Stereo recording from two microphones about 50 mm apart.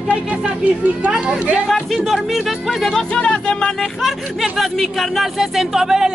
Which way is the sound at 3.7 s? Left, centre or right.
Centre.